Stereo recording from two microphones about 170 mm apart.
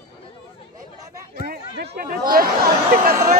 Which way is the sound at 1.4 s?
60° right (ahead or behind).